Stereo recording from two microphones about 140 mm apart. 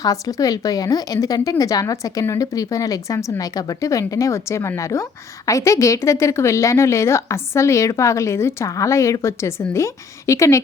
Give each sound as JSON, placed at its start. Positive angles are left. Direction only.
{"t": 0.0, "sound": "a woman's voice", "side_deg": 25}